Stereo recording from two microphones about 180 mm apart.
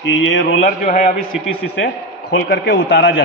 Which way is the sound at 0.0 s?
80° left.